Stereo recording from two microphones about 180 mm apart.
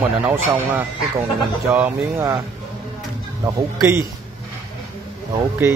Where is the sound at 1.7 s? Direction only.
10° right (ahead or behind).